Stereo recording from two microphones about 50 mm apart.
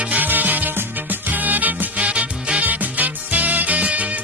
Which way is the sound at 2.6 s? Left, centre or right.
Right.